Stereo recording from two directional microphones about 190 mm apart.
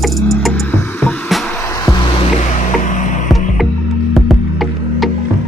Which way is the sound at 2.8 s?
40° left (ahead or behind).